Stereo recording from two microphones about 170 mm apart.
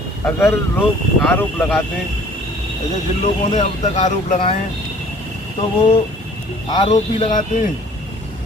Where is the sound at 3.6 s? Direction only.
45° left (ahead or behind).